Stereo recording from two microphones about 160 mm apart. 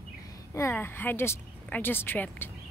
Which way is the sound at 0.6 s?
15° left (ahead or behind).